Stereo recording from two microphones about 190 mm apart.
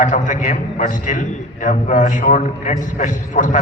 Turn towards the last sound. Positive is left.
turn(degrees=40)  # may be behind; listen again after turning